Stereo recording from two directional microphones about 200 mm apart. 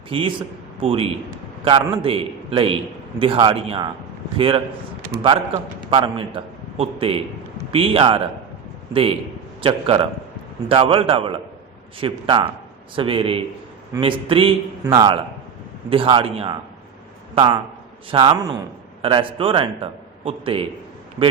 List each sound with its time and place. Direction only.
0.1 s a man's voice: 25° right (ahead or behind)
5.9 s a man's voice: 25° right (ahead or behind)